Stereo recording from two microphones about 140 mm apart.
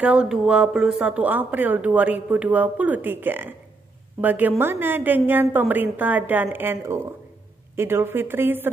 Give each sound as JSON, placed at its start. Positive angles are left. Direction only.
{"t": 0.0, "sound": "speech", "side_deg": -10}